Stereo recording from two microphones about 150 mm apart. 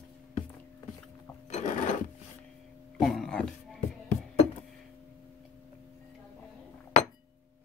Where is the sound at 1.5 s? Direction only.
55° left (ahead or behind).